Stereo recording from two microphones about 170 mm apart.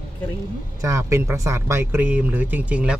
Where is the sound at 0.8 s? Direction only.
20° right (ahead or behind).